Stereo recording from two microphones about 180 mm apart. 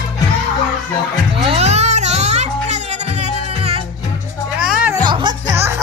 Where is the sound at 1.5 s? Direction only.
35° right (ahead or behind).